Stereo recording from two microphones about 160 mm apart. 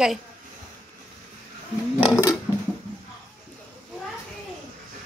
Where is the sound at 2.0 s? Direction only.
20° left (ahead or behind).